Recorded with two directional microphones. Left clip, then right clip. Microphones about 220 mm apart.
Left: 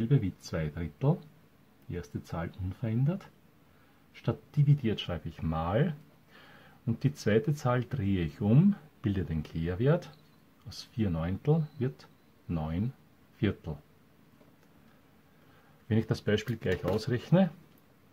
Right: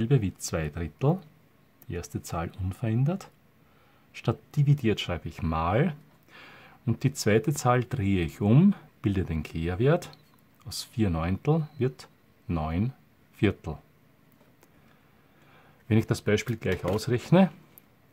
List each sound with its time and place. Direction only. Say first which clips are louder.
0.0 s speech: right 4 dB; 40° right (ahead or behind)
15.9 s speech: right 4 dB; 30° right (ahead or behind)